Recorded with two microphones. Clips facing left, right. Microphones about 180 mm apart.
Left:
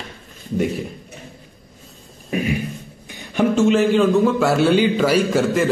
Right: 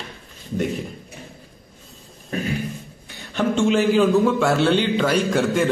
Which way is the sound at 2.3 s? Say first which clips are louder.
Left 3 dB; 15° left (ahead or behind).